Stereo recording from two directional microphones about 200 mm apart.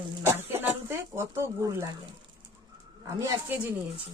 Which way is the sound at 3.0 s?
15° right (ahead or behind).